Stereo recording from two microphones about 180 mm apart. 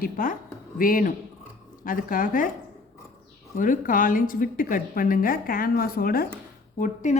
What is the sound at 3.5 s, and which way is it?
A woman's voice, 50° left (ahead or behind).